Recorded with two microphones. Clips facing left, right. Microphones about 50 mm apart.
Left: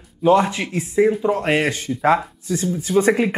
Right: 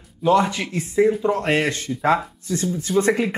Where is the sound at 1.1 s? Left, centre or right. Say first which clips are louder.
Left 1 dB; centre.